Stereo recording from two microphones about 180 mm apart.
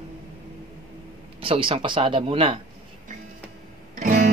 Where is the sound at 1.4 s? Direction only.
30° right (ahead or behind).